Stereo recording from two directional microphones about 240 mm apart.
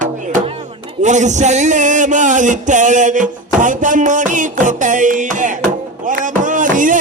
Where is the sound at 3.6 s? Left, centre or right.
Right.